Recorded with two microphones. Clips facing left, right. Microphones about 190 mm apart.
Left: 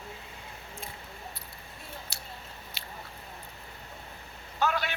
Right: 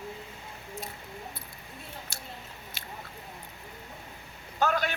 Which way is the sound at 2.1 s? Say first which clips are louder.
Right 2 dB; 50° right (ahead or behind).